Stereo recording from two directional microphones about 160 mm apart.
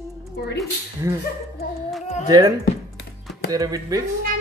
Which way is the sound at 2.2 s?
25° right (ahead or behind).